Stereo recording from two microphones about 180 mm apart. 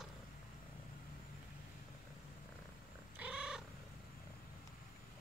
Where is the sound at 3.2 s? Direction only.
5° right (ahead or behind).